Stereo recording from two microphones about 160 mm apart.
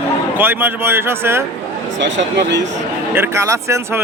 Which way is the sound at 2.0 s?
90° right.